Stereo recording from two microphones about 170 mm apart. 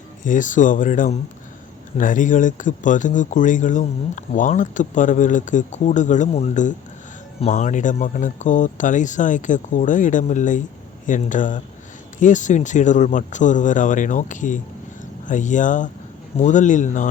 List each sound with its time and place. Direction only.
0.3 s speech: 50° left (ahead or behind)